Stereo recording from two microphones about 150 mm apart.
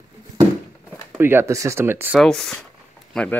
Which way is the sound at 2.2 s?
Centre (ahead or behind).